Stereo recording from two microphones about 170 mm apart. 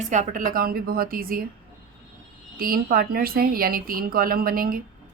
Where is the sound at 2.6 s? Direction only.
60° right (ahead or behind).